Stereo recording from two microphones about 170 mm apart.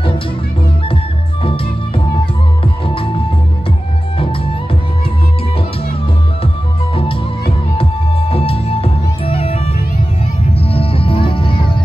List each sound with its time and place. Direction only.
1.4 s music: 30° left (ahead or behind)
7.7 s music: 35° left (ahead or behind)